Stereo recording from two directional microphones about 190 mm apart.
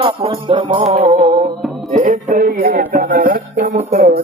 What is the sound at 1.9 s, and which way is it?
Speech, 40° right (ahead or behind).